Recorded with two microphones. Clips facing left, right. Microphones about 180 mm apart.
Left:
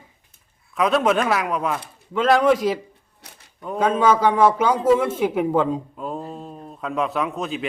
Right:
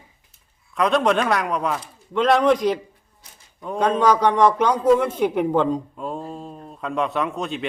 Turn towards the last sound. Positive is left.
turn(degrees=0)  # may be behind; listen again after turning